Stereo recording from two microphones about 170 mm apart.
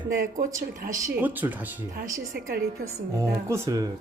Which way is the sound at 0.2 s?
55° right (ahead or behind).